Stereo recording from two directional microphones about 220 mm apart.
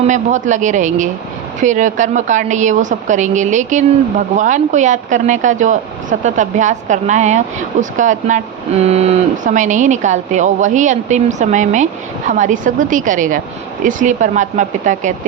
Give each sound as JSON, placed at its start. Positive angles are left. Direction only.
{"t": 0.0, "sound": "speech", "side_deg": -35}